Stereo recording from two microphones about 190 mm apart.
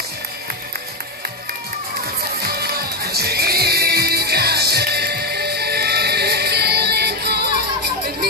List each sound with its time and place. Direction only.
2.4 s music: 55° right (ahead or behind)